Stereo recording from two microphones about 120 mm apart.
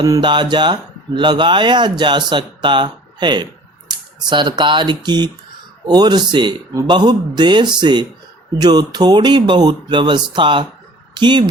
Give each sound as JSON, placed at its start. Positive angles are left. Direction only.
{"t": 0.0, "sound": "speech", "side_deg": -35}